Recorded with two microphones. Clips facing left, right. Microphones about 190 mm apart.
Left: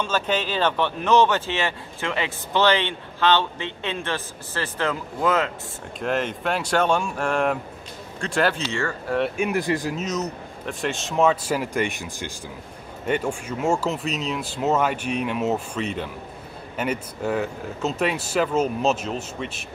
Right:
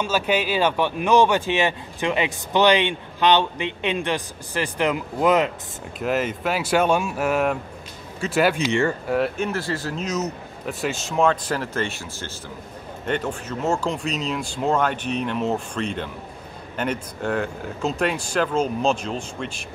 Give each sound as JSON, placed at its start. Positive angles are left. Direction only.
{"t": 0.0, "sound": "speech", "side_deg": -10}
{"t": 5.9, "sound": "speech", "side_deg": -5}
{"t": 9.4, "sound": "speech", "side_deg": 15}
{"t": 9.9, "sound": "speech", "side_deg": 0}